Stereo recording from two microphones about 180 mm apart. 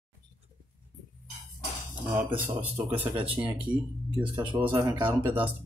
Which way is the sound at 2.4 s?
30° right (ahead or behind).